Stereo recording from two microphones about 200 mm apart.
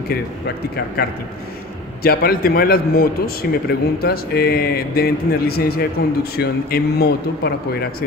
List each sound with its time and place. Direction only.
1.0 s a man's voice: 50° left (ahead or behind)